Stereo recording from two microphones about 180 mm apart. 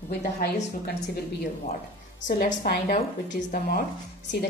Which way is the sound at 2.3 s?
55° left (ahead or behind).